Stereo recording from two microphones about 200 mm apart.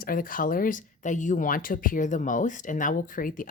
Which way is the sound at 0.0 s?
45° left (ahead or behind).